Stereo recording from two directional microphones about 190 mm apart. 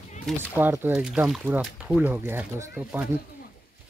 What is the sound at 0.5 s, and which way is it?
Speech, 10° right (ahead or behind).